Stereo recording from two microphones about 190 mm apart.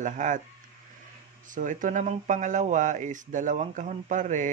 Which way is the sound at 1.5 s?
45° right (ahead or behind).